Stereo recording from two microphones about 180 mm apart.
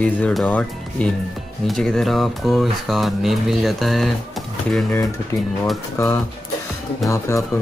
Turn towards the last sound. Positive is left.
turn(degrees=15)  # may be behind; listen again after turning